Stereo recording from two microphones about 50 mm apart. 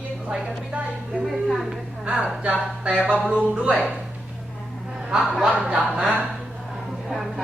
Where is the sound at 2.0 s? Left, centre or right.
Right.